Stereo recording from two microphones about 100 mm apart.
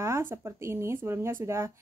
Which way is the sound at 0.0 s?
25° right (ahead or behind).